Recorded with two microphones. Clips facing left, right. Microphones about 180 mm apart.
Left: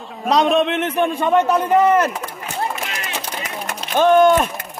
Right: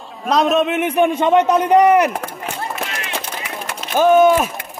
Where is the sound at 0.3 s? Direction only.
Centre (ahead or behind).